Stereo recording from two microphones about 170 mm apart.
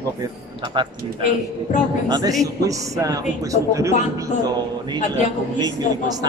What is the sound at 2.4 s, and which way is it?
Speech, 20° right (ahead or behind).